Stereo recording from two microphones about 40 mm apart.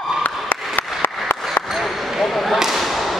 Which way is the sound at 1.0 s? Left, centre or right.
Left.